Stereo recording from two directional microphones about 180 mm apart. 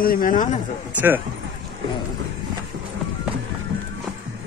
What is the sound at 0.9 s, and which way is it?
Speech, 10° right (ahead or behind).